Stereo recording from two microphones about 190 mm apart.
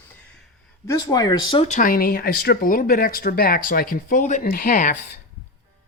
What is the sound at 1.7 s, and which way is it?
Speech, 45° left (ahead or behind).